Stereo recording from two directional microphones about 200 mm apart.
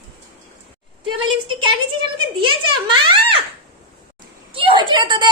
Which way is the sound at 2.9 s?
25° right (ahead or behind).